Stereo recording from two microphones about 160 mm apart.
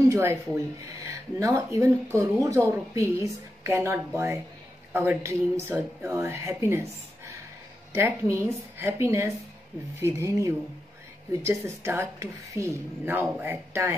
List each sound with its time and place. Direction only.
0.1 s speech: 20° right (ahead or behind)